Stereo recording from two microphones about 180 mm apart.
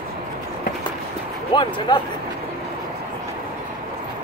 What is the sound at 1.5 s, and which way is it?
Speech, 25° left (ahead or behind).